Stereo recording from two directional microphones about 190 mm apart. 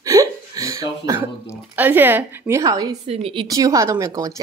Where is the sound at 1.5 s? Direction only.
10° right (ahead or behind).